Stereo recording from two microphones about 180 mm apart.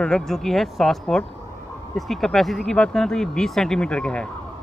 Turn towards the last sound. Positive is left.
turn(degrees=5)  # may be behind; listen again after turning